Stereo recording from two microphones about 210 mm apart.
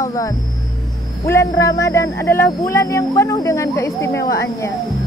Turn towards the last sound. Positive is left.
turn(degrees=50)  # may be behind; listen again after turning